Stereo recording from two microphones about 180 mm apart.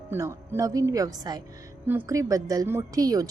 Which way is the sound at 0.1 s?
15° right (ahead or behind).